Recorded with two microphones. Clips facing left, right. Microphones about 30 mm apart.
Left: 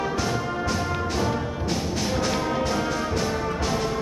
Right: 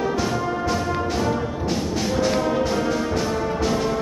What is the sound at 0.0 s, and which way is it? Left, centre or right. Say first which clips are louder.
Music: right 3 dB; centre.